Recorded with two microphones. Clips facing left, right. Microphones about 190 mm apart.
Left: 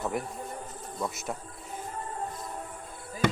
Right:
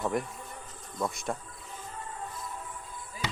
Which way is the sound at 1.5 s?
40° left (ahead or behind).